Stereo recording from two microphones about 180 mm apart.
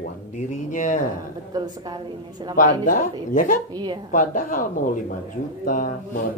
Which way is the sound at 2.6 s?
45° left (ahead or behind).